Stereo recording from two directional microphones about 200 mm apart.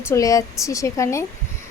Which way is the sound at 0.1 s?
15° left (ahead or behind).